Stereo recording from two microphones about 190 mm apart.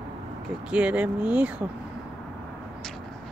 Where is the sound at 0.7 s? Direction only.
5° right (ahead or behind).